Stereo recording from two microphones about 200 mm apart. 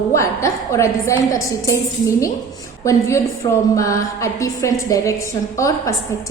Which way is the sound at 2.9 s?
15° left (ahead or behind).